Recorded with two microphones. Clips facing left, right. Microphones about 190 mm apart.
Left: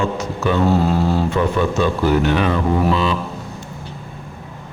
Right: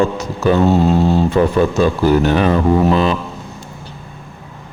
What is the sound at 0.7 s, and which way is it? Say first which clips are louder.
Mantra: right 4 dB; 25° right (ahead or behind).